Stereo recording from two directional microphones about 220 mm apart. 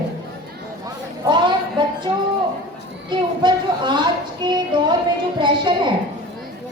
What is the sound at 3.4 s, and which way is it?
A woman's voice, 20° right (ahead or behind).